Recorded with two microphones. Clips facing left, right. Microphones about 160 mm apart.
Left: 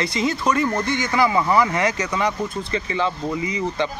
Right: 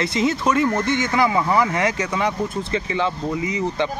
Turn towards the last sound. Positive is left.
turn(degrees=0)  # may be behind; listen again after turning